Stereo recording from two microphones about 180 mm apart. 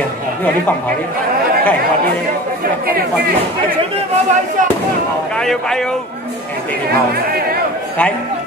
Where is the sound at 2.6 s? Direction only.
55° right (ahead or behind).